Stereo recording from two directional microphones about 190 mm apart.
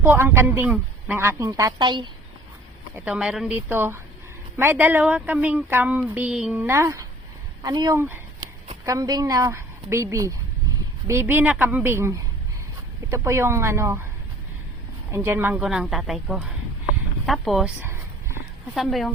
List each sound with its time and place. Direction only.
0.0 s speech: 10° right (ahead or behind)
2.9 s speech: 5° right (ahead or behind)
15.1 s speech: 15° right (ahead or behind)
17.2 s a sound: centre (ahead or behind)
18.7 s speech: centre (ahead or behind)